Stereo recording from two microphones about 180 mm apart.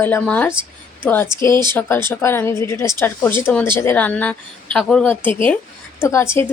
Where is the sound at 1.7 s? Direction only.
15° left (ahead or behind).